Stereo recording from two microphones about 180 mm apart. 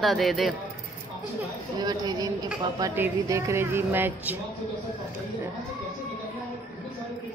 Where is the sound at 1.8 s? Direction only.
20° right (ahead or behind).